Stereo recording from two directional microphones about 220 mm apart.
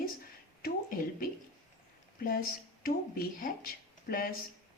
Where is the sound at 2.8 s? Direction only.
40° left (ahead or behind).